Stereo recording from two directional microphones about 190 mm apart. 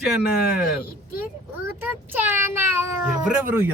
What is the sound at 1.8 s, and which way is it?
Speech, 10° right (ahead or behind).